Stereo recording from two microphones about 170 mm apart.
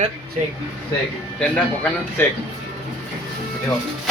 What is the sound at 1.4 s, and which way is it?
Speech, 5° left (ahead or behind).